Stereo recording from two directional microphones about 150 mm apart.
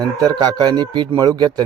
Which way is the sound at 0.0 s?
25° right (ahead or behind).